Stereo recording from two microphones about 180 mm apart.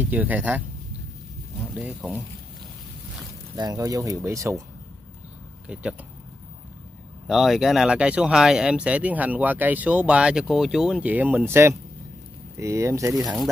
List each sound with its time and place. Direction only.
0.0 s speech: 10° right (ahead or behind)
3.5 s speech: 20° right (ahead or behind)
5.7 s speech: 5° right (ahead or behind)
7.2 s speech: centre (ahead or behind); by 13.1 s 15° right (ahead or behind)